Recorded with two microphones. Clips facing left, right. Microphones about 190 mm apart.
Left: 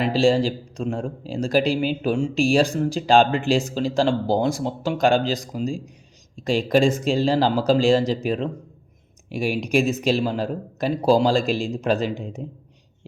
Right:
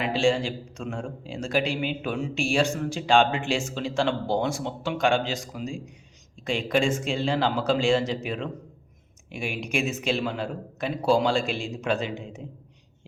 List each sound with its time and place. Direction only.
0.0 s a man's voice: 35° left (ahead or behind)